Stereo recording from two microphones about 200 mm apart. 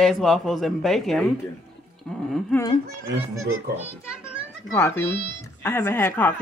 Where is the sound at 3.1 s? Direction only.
85° right.